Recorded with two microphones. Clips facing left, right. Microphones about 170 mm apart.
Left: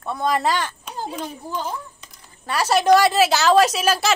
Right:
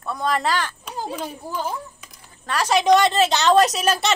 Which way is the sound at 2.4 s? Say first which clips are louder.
Left 1 dB; 10° left (ahead or behind).